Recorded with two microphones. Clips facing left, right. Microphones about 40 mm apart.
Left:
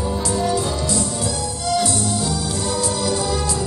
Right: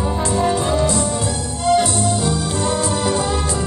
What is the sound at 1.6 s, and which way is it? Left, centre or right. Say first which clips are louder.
Music: right 5 dB; right.